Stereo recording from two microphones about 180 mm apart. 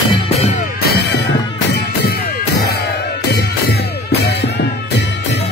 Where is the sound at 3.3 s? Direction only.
65° left (ahead or behind).